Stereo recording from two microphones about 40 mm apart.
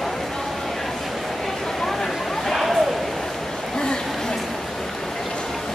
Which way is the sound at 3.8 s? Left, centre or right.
Left.